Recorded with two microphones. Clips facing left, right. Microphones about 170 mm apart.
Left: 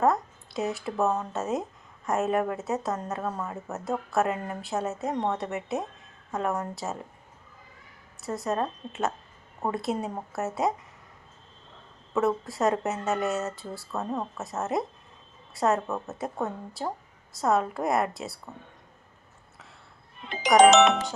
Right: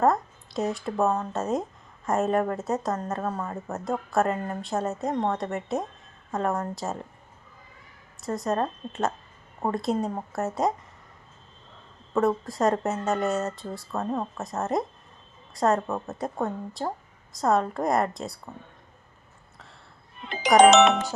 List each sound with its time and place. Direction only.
0.0 s speech: centre (ahead or behind)
8.2 s speech: centre (ahead or behind)
12.1 s speech: 5° left (ahead or behind)
20.6 s speech: 65° right (ahead or behind)